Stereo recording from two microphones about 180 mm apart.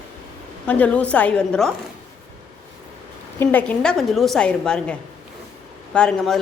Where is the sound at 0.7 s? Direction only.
5° left (ahead or behind).